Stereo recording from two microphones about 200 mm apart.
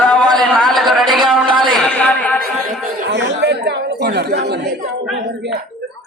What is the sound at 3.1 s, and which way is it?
Chatter, 55° right (ahead or behind).